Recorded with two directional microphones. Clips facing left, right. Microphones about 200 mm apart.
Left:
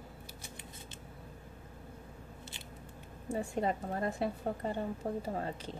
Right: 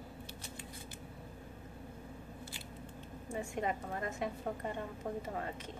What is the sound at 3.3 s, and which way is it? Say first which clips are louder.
A woman's voice: left 4 dB; 35° left (ahead or behind).